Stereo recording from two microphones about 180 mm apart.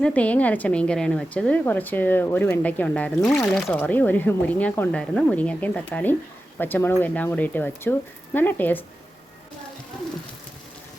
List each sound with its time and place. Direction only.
0.0 s a woman's voice: 10° left (ahead or behind)